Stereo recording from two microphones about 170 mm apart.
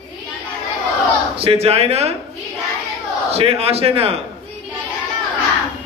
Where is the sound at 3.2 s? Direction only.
35° right (ahead or behind).